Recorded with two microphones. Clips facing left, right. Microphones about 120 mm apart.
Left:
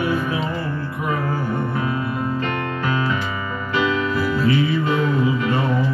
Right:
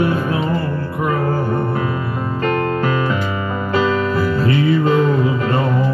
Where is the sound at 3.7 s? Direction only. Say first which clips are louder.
Right 3 dB; 40° right (ahead or behind).